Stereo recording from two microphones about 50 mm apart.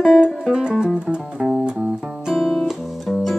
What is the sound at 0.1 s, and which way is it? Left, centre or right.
Music, centre.